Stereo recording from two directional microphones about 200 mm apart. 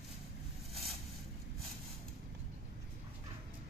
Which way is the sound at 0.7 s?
Centre (ahead or behind).